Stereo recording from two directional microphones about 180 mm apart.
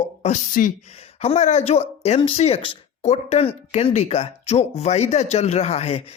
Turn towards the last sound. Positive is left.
turn(degrees=35)  # may be behind; listen again after turning